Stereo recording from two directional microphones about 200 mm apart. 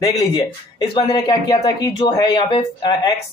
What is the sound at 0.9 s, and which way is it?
Speech, 25° left (ahead or behind).